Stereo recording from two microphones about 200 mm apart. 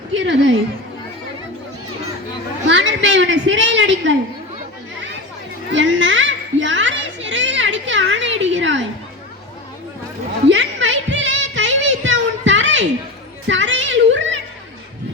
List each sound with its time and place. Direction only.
0.2 s a woman's voice: 65° right (ahead or behind)
2.6 s a sound: 65° right (ahead or behind)
5.7 s children playing: 70° right (ahead or behind)
10.5 s music: 65° right (ahead or behind)
13.5 s children playing: 70° right (ahead or behind)